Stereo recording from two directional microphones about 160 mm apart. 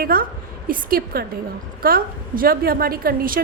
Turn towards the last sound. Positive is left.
turn(degrees=-65)  # may be behind; listen again after turning